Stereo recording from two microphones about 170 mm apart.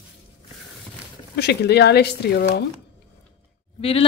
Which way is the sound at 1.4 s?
75° left (ahead or behind).